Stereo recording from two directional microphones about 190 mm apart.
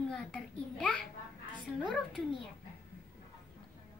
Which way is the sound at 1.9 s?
5° left (ahead or behind).